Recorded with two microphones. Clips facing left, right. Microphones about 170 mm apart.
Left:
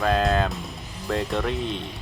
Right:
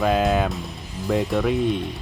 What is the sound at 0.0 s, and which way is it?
Speech, 5° right (ahead or behind).